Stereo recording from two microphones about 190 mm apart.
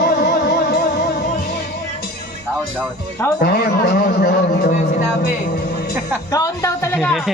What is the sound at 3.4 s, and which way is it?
A man's voice, 55° left (ahead or behind).